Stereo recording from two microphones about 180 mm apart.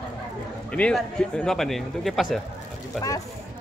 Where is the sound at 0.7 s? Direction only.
5° left (ahead or behind).